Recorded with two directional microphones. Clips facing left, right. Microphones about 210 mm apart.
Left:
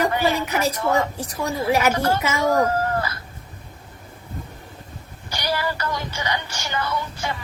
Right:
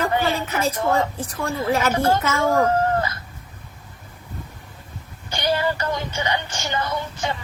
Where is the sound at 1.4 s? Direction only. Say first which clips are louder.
Left 1 dB; 10° left (ahead or behind).